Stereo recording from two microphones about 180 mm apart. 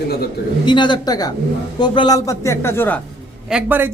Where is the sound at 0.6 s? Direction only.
25° left (ahead or behind).